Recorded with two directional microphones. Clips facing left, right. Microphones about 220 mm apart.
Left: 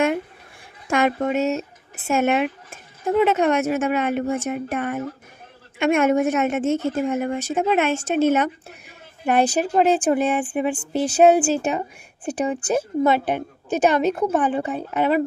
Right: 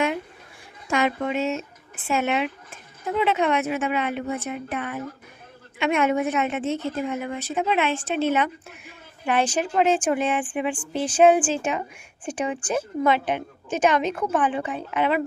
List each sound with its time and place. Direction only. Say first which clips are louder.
0.9 s a woman's voice: left 3 dB; 50° left (ahead or behind)